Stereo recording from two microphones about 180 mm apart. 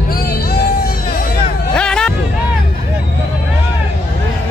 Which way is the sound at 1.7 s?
5° left (ahead or behind).